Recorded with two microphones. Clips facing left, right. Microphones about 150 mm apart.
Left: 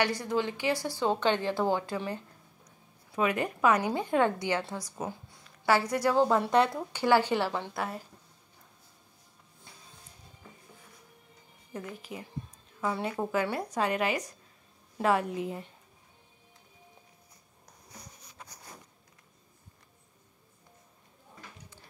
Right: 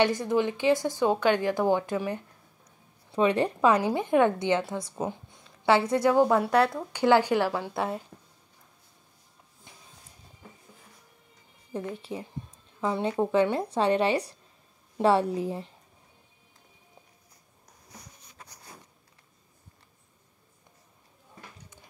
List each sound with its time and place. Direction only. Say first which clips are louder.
0.0 s a woman's voice: right 5 dB; 20° right (ahead or behind)
3.1 s a woman's voice: right 5 dB; 30° right (ahead or behind)
3.9 s a woman's voice: right 4 dB; 15° right (ahead or behind)
6.2 s a woman's voice: right 2 dB; 5° right (ahead or behind)
8.1 s a sound: right 5 dB; 55° right (ahead or behind)
9.7 s music: right 1 dB; 20° right (ahead or behind)
11.7 s a woman's voice: right 6 dB; 30° right (ahead or behind)